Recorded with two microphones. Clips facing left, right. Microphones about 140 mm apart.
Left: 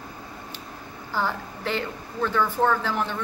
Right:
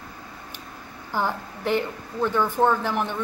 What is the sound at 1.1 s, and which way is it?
A woman's voice, 15° right (ahead or behind).